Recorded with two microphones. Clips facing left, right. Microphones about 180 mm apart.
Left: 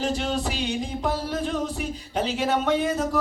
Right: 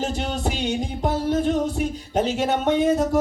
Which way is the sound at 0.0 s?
45° right (ahead or behind).